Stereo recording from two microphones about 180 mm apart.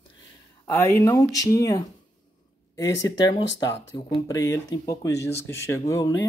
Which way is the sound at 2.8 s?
90° left.